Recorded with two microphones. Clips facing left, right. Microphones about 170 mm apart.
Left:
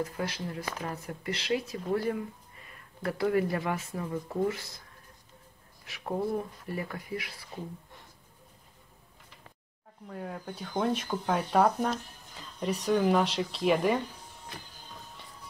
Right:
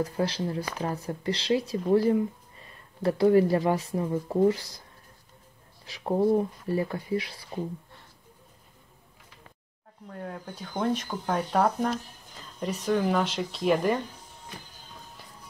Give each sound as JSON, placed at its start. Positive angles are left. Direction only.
{"t": 0.0, "sound": "speech", "side_deg": -30}
{"t": 5.9, "sound": "speech", "side_deg": -30}
{"t": 10.0, "sound": "speech", "side_deg": 0}